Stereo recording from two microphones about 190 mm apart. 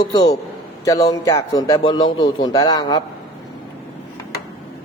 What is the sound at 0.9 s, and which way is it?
A man's voice, 20° left (ahead or behind).